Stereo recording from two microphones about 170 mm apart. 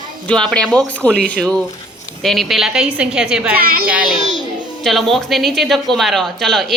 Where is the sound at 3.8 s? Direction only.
5° right (ahead or behind).